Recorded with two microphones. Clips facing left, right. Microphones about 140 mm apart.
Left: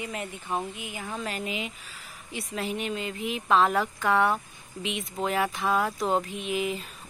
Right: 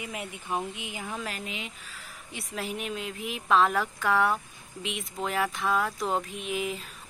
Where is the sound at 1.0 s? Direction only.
Centre (ahead or behind).